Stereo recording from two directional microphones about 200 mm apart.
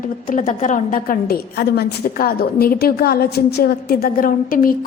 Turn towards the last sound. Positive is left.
turn(degrees=45)  # may be behind; listen again after turning